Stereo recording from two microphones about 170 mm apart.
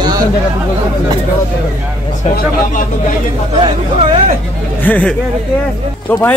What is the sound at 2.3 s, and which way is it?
Speech, 50° left (ahead or behind).